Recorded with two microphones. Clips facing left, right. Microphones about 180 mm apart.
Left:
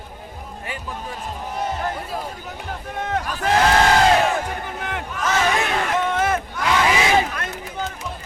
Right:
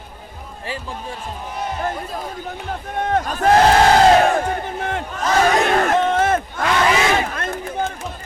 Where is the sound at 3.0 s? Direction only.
50° right (ahead or behind).